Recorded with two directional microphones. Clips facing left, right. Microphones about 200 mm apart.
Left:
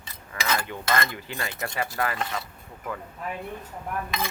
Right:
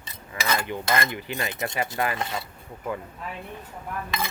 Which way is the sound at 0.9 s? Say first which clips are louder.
Even; 15° right (ahead or behind).